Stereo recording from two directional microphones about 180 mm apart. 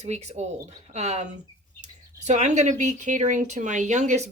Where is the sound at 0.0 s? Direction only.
40° right (ahead or behind).